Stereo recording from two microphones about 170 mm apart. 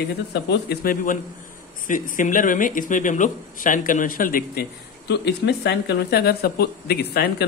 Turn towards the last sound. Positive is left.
turn(degrees=70)  # may be behind; listen again after turning